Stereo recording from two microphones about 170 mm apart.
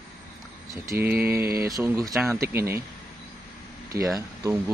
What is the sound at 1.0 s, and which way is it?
Speech, 10° right (ahead or behind).